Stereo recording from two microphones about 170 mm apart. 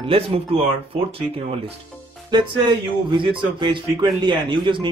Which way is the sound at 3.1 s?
30° right (ahead or behind).